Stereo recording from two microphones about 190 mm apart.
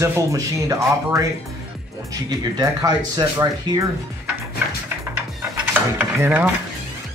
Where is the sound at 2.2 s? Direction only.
20° right (ahead or behind).